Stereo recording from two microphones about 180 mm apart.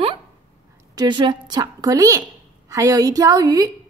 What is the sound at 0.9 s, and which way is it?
A woman's voice, 25° right (ahead or behind).